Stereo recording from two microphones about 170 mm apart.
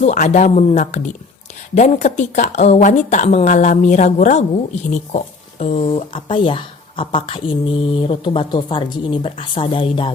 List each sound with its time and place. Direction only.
0.0 s a woman's voice: 45° left (ahead or behind)